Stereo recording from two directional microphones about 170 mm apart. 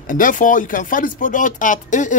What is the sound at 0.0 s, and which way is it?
Speech, 50° left (ahead or behind).